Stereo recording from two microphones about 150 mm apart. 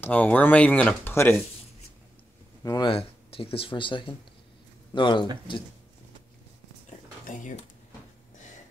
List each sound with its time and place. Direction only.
0.0 s speech: 10° left (ahead or behind)
2.6 s speech: 30° left (ahead or behind)
6.9 s a sound: 60° left (ahead or behind)